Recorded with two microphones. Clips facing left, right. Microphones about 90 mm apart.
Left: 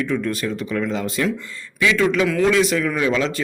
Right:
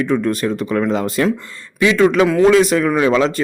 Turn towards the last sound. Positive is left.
turn(degrees=-40)  # may be behind; listen again after turning